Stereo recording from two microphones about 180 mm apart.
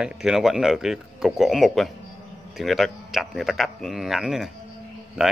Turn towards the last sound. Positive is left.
turn(degrees=-5)  # may be behind; listen again after turning